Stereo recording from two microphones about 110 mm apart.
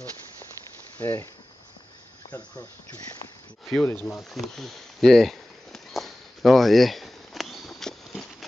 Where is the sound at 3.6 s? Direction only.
10° left (ahead or behind).